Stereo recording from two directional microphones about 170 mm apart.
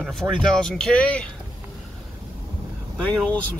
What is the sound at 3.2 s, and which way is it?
Speech, 10° left (ahead or behind).